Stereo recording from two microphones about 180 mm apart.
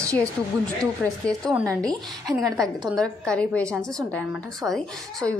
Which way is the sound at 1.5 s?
15° right (ahead or behind).